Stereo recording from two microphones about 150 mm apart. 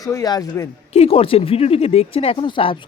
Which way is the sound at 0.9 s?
40° left (ahead or behind).